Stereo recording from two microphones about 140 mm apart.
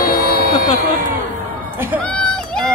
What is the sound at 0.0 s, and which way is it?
Music, 90° left.